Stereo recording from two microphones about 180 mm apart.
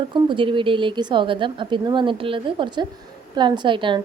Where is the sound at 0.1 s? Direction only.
25° right (ahead or behind).